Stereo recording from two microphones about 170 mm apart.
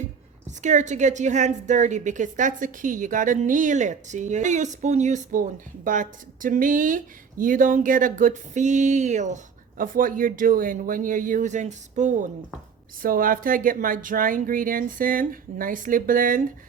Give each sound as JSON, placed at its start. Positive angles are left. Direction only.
{"t": 0.6, "sound": "a woman's voice", "side_deg": -45}
{"t": 13.0, "sound": "speech", "side_deg": -55}